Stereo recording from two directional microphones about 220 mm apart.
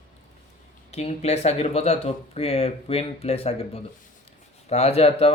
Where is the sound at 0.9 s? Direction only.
30° left (ahead or behind).